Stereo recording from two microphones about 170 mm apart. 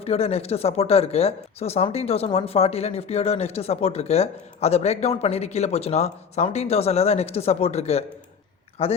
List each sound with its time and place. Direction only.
0.0 s speech: 35° left (ahead or behind)